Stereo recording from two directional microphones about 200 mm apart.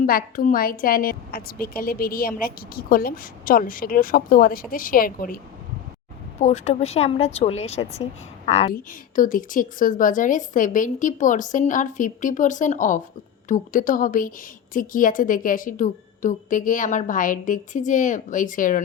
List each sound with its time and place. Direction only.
0.0 s a woman's voice: 45° left (ahead or behind)
6.4 s a woman's voice: 35° left (ahead or behind)